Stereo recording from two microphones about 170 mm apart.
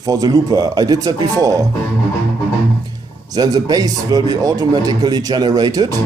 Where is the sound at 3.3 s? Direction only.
20° right (ahead or behind).